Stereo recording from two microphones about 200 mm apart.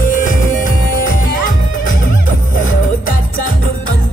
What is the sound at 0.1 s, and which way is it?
Music, 40° left (ahead or behind).